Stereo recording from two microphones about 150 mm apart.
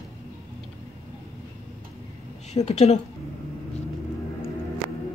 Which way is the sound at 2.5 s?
45° left (ahead or behind).